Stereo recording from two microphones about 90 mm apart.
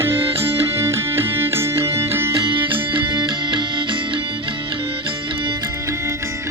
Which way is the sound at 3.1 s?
55° right (ahead or behind).